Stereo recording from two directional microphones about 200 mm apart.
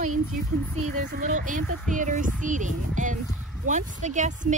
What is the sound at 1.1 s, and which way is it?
A woman's voice, 40° right (ahead or behind).